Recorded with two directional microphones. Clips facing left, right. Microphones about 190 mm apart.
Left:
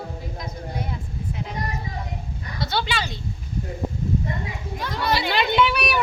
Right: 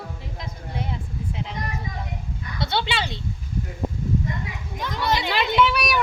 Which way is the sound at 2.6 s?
25° right (ahead or behind).